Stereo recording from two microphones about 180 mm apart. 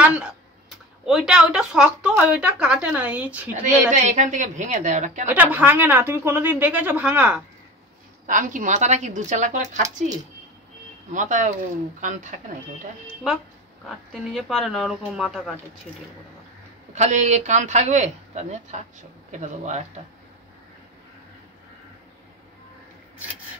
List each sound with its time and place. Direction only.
0.0 s speech: 5° right (ahead or behind)
3.6 s a woman's voice: 45° right (ahead or behind)
5.3 s a woman's voice: 10° right (ahead or behind)
8.3 s a woman's voice: 45° right (ahead or behind)
11.1 s a woman's voice: 45° right (ahead or behind)
13.8 s speech: centre (ahead or behind)
16.9 s speech: 40° right (ahead or behind)